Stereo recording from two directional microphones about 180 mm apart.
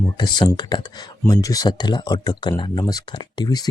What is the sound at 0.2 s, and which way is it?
Speech, 25° left (ahead or behind).